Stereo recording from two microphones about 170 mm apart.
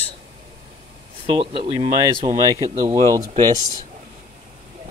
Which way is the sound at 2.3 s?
20° right (ahead or behind).